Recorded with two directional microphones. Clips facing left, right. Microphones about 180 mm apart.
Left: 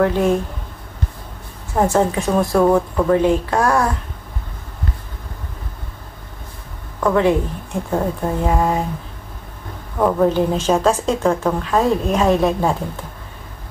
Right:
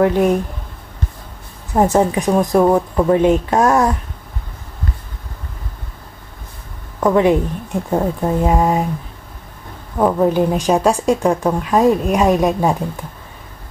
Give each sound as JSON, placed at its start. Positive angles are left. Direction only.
{"t": 0.0, "sound": "a woman's voice", "side_deg": -15}
{"t": 1.8, "sound": "a woman's voice", "side_deg": -15}
{"t": 7.0, "sound": "a woman's voice", "side_deg": -15}
{"t": 9.9, "sound": "a woman's voice", "side_deg": -15}